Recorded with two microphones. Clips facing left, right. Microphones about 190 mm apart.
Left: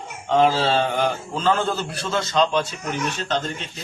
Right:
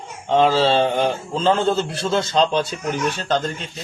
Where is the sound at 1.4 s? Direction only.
25° right (ahead or behind).